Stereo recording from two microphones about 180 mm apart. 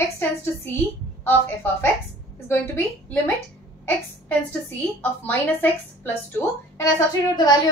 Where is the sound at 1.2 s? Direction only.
10° left (ahead or behind).